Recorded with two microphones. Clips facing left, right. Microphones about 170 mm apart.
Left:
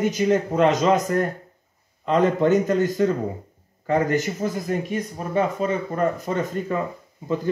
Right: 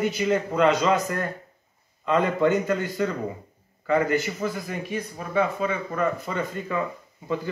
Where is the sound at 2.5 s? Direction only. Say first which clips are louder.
Left 5 dB; 40° left (ahead or behind).